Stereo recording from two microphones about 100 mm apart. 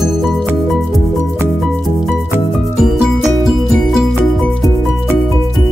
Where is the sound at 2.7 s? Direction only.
5° right (ahead or behind).